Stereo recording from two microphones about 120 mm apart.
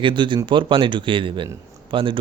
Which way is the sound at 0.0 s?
45° right (ahead or behind).